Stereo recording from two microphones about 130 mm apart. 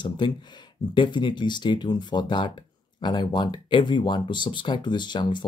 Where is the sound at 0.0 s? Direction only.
35° left (ahead or behind).